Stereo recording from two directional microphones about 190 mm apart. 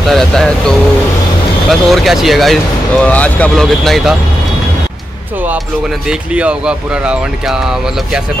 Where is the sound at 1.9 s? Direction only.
Centre (ahead or behind).